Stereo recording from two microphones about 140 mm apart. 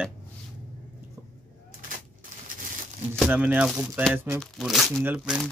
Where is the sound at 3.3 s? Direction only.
10° right (ahead or behind).